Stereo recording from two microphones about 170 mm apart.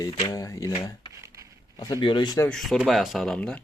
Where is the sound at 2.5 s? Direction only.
5° left (ahead or behind).